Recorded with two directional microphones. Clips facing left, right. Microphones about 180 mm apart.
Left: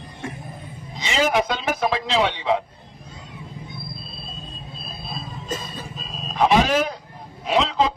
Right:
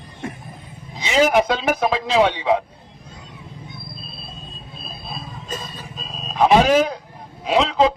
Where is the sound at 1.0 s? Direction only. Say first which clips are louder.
Right 4 dB; 15° right (ahead or behind).